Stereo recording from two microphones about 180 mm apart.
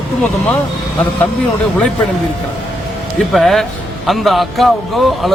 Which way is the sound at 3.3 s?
Centre (ahead or behind).